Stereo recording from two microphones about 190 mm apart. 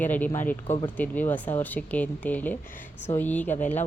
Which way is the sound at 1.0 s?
10° left (ahead or behind).